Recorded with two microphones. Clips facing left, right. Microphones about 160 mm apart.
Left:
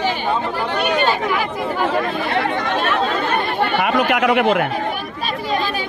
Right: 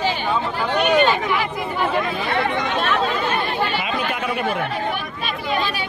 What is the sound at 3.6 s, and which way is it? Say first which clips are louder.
Chatter: left 5 dB; 60° left (ahead or behind).